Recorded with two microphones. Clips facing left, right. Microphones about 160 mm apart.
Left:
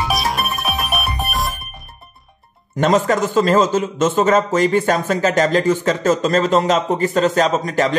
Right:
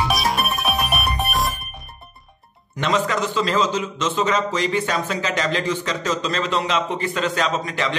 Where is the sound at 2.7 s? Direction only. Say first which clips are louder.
Left 6 dB; 45° left (ahead or behind).